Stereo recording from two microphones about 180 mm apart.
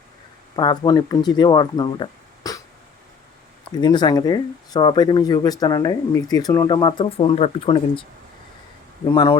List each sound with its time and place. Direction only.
0.5 s speech: 25° left (ahead or behind)
3.8 s speech: 25° left (ahead or behind)
9.0 s speech: 15° left (ahead or behind)